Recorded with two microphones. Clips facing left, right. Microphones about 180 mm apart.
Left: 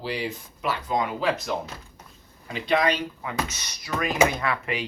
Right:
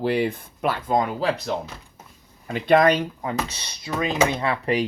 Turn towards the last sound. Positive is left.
turn(degrees=-30)  # may be behind; listen again after turning